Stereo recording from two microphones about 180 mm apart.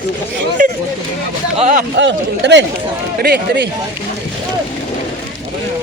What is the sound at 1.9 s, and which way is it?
Speech, 75° right (ahead or behind).